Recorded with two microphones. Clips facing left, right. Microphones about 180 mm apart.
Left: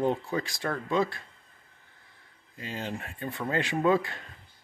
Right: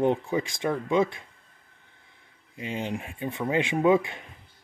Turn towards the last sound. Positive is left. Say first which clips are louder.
# right 3 dB
turn(degrees=-20)  # may be behind; listen again after turning